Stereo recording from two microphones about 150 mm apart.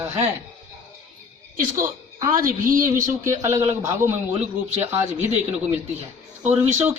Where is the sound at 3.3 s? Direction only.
20° right (ahead or behind).